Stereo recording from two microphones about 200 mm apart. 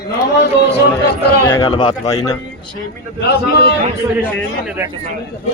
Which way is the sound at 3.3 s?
55° left (ahead or behind).